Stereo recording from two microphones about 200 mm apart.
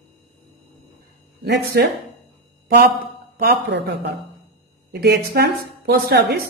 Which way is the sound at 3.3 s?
50° right (ahead or behind).